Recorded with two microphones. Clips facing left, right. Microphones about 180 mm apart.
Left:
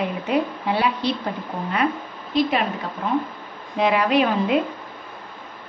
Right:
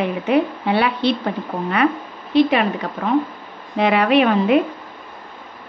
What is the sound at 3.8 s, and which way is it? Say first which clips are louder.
Speech: right 3 dB; 70° right (ahead or behind).